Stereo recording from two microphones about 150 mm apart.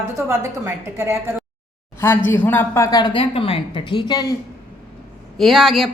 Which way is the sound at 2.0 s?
15° left (ahead or behind).